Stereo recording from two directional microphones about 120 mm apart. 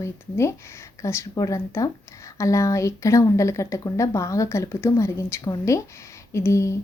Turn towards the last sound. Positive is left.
turn(degrees=25)  # may be behind; listen again after turning